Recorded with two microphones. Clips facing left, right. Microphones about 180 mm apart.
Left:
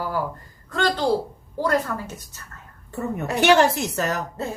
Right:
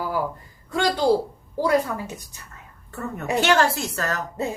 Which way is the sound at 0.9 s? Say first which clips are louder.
Right 2 dB; 10° right (ahead or behind).